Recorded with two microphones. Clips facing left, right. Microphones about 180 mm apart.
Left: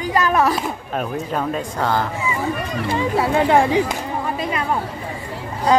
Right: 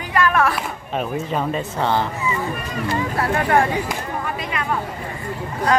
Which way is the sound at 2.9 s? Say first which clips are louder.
Left 4 dB; 15° left (ahead or behind).